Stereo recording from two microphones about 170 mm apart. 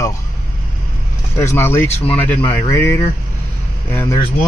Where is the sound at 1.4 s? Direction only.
15° left (ahead or behind).